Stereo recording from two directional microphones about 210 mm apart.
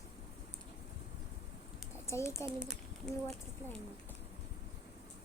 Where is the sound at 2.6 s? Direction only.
Centre (ahead or behind).